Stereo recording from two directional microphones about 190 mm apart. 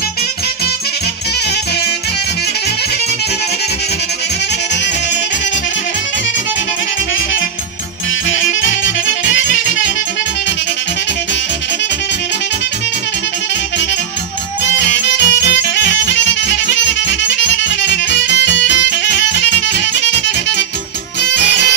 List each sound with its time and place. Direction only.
8.3 s music: 80° left
14.9 s music: 70° left (ahead or behind)